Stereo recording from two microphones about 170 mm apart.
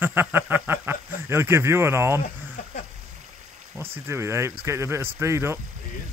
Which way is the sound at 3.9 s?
15° right (ahead or behind).